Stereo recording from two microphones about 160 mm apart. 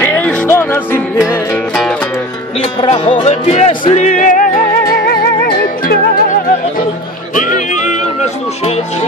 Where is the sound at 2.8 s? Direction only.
35° left (ahead or behind); by 6.5 s 65° left (ahead or behind).